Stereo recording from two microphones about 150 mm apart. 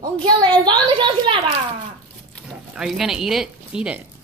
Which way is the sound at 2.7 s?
5° right (ahead or behind).